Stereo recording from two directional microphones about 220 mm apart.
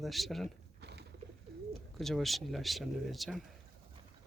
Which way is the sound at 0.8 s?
50° right (ahead or behind).